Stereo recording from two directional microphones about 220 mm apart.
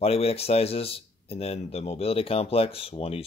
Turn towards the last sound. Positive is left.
turn(degrees=25)  # may be behind; listen again after turning